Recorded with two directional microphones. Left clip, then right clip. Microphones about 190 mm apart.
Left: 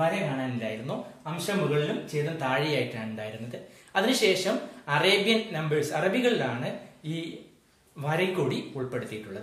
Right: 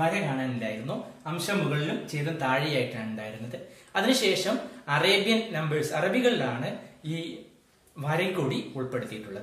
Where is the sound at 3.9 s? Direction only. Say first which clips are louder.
Left 1 dB; 20° left (ahead or behind).